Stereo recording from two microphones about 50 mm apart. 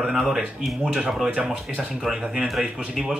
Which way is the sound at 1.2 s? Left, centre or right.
Centre.